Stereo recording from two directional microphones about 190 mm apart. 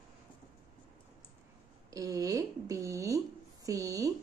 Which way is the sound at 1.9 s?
20° right (ahead or behind).